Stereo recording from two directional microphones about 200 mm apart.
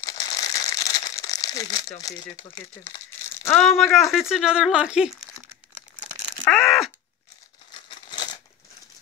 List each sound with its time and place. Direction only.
0.0 s crumpling: 20° left (ahead or behind)
1.2 s speech: 20° left (ahead or behind); by 5.1 s 5° right (ahead or behind)
6.4 s groan: centre (ahead or behind)
7.9 s crumpling: 25° left (ahead or behind)